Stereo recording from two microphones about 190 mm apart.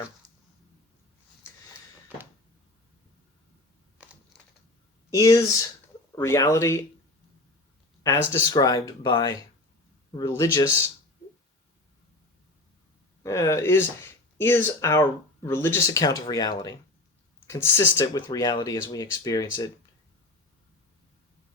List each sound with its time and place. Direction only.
5.1 s speech: 20° left (ahead or behind)
8.0 s speech: 15° left (ahead or behind)
13.2 s speech: 15° left (ahead or behind)